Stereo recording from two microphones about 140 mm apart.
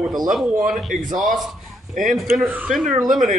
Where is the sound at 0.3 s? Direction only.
Centre (ahead or behind).